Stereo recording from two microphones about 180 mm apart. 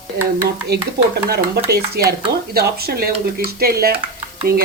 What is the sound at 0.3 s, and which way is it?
Speech, 65° right (ahead or behind).